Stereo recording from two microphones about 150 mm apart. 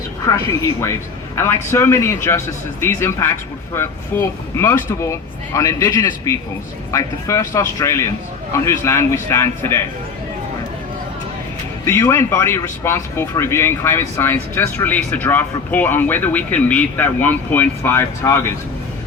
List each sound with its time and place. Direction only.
0.3 s speech: 20° left (ahead or behind)
11.9 s speech: 15° left (ahead or behind)